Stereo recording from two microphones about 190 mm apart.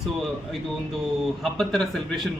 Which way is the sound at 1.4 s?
Centre (ahead or behind).